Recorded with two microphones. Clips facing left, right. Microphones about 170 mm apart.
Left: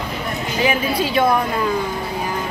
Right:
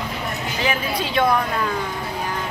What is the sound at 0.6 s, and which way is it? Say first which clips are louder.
Speech: left 5 dB; 5° left (ahead or behind).